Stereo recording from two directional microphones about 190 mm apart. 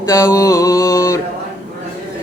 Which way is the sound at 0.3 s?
15° left (ahead or behind).